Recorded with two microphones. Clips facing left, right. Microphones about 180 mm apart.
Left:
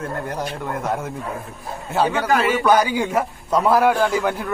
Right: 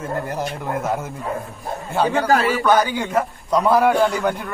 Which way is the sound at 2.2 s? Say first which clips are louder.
Right 1 dB; 35° right (ahead or behind).